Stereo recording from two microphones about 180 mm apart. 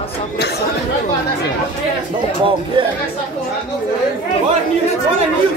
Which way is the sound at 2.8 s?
25° right (ahead or behind).